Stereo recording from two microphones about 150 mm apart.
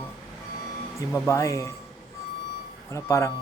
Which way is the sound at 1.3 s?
20° left (ahead or behind).